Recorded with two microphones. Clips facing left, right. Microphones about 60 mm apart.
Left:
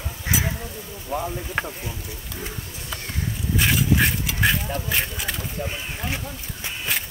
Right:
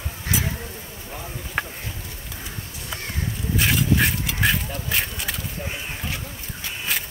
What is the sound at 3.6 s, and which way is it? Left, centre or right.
Speech, centre.